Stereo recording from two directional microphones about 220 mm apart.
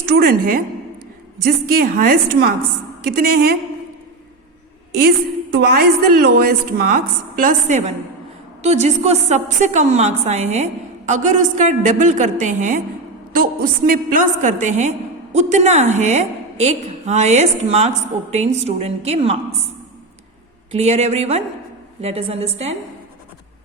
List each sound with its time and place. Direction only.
0.2 s a woman's voice: 40° right (ahead or behind)
5.5 s a woman's voice: 50° right (ahead or behind); by 19.4 s 25° right (ahead or behind)
20.7 s speech: 30° right (ahead or behind)